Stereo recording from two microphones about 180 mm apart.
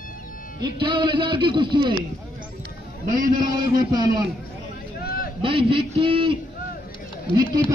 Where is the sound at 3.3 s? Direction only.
25° right (ahead or behind).